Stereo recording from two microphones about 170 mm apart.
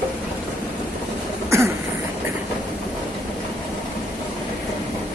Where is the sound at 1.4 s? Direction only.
15° right (ahead or behind).